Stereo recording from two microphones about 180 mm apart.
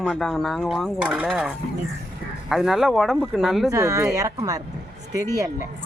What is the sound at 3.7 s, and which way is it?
Speech, 15° right (ahead or behind).